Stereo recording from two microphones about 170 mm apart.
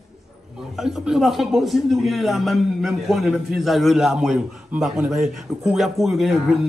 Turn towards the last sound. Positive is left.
turn(degrees=0)  # may be behind; listen again after turning